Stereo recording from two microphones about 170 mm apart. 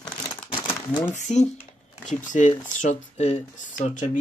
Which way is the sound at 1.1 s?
45° left (ahead or behind).